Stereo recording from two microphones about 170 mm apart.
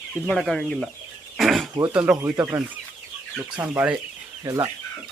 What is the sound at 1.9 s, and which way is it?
Speech, 10° right (ahead or behind).